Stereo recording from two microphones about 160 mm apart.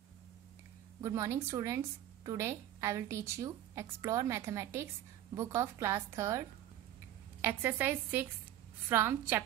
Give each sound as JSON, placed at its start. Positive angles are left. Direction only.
{"t": 1.0, "sound": "a woman's voice", "side_deg": -20}
{"t": 7.4, "sound": "a woman's voice", "side_deg": -15}